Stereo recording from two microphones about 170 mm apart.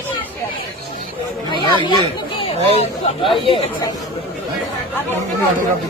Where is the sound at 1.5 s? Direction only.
25° left (ahead or behind).